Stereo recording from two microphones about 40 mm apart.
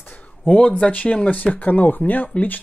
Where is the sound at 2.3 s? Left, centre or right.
Left.